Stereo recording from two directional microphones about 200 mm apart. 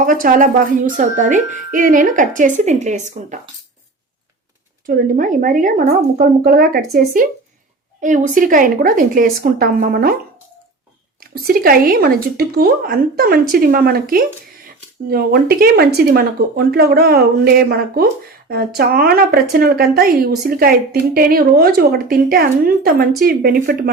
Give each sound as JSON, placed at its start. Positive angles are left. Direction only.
{"t": 0.0, "sound": "speech", "side_deg": -40}
{"t": 4.9, "sound": "a woman's voice", "side_deg": -40}
{"t": 11.4, "sound": "a woman's voice", "side_deg": -45}